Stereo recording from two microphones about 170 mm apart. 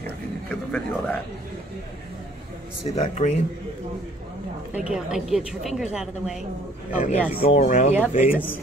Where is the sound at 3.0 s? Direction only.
45° left (ahead or behind).